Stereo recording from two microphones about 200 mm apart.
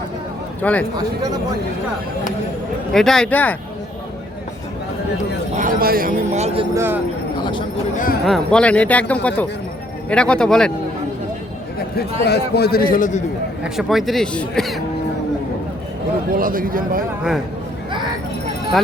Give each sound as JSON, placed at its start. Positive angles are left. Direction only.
{"t": 0.6, "sound": "speech", "side_deg": 5}
{"t": 2.9, "sound": "speech", "side_deg": 0}
{"t": 5.5, "sound": "speech", "side_deg": -45}
{"t": 6.7, "sound": "speech", "side_deg": -10}
{"t": 7.9, "sound": "a man's voice", "side_deg": 45}
{"t": 8.2, "sound": "speech", "side_deg": 0}
{"t": 12.2, "sound": "a man's voice", "side_deg": 55}
{"t": 13.7, "sound": "speech", "side_deg": 0}
{"t": 16.3, "sound": "a man's voice", "side_deg": -45}